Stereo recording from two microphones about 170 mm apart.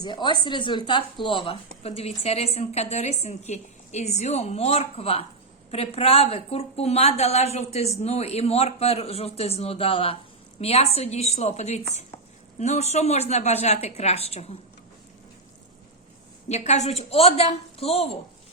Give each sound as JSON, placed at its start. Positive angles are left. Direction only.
{"t": 0.0, "sound": "a woman's voice", "side_deg": 25}
{"t": 16.5, "sound": "a woman's voice", "side_deg": 40}